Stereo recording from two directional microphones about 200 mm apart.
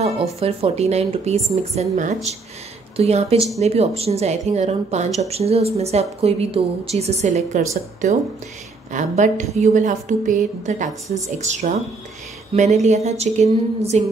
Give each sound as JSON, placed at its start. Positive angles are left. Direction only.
{"t": 0.0, "sound": "a woman's voice", "side_deg": -30}
{"t": 8.9, "sound": "a woman's voice", "side_deg": -35}